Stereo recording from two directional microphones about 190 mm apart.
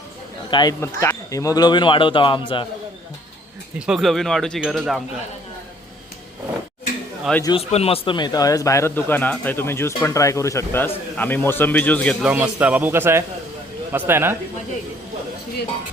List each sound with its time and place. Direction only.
0.5 s speech: 20° left (ahead or behind)
3.8 s speech: centre (ahead or behind)
7.4 s speech: 30° left (ahead or behind); by 12.1 s 10° left (ahead or behind)
12.2 s speech: 10° right (ahead or behind)